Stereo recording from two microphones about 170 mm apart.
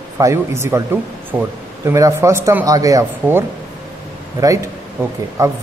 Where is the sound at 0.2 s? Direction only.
15° right (ahead or behind).